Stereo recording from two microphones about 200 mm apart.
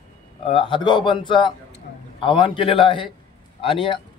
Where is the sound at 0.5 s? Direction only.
25° left (ahead or behind).